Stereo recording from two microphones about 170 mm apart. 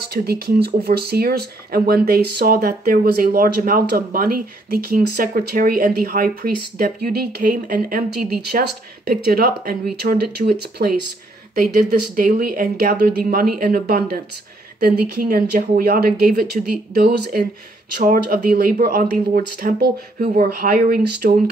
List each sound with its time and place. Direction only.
0.1 s speech: 65° right (ahead or behind)
11.5 s speech: 55° right (ahead or behind)
18.0 s speech: 55° right (ahead or behind)